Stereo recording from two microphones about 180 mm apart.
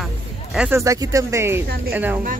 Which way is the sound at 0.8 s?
15° right (ahead or behind).